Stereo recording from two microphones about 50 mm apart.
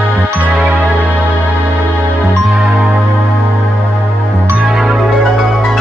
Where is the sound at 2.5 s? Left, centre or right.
Centre.